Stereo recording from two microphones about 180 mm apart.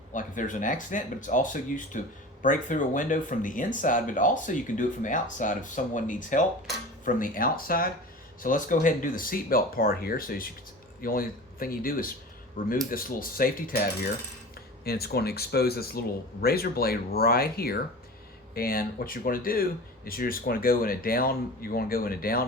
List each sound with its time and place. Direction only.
0.1 s speech: 45° left (ahead or behind)